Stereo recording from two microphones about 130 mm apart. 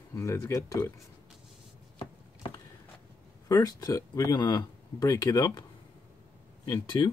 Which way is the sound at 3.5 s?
25° left (ahead or behind).